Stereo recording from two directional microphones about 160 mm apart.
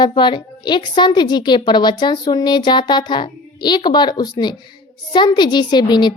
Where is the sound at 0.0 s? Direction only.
30° left (ahead or behind).